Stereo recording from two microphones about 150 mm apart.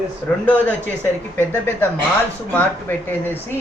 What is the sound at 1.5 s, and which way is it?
Speech, 10° left (ahead or behind).